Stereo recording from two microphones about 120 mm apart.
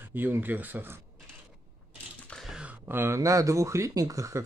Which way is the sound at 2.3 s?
Centre (ahead or behind).